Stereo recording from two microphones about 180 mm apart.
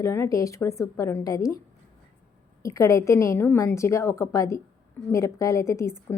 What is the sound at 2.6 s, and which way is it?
A woman's voice, 15° left (ahead or behind).